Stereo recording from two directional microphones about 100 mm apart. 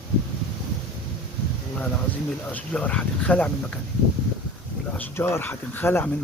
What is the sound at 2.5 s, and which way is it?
Speech, 15° left (ahead or behind).